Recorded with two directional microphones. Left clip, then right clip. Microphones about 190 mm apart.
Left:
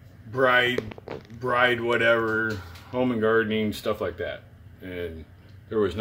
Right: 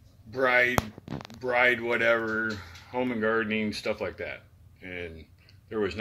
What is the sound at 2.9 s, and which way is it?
Speech, 5° left (ahead or behind).